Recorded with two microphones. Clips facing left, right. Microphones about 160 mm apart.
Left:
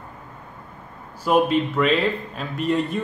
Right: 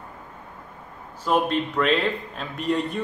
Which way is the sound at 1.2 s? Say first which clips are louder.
Left 4 dB; 5° left (ahead or behind).